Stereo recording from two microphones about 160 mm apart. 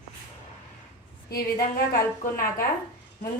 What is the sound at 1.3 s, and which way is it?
A woman's voice, 70° left (ahead or behind).